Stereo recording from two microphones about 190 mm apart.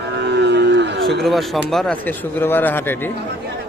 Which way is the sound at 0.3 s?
65° right (ahead or behind).